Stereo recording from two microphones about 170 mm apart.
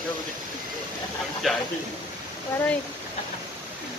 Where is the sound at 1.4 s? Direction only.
Centre (ahead or behind).